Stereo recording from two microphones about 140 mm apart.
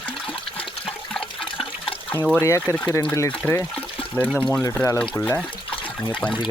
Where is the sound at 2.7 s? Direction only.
20° left (ahead or behind).